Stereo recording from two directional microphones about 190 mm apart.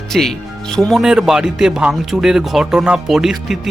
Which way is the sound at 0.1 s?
Centre (ahead or behind).